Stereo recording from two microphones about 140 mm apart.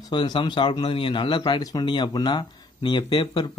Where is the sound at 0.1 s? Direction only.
35° left (ahead or behind).